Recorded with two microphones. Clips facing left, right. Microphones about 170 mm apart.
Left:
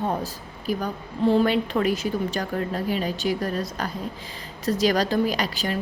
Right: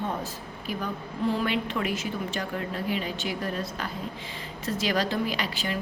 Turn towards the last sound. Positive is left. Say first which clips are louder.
# left 5 dB
turn(degrees=40)  # may be behind; listen again after turning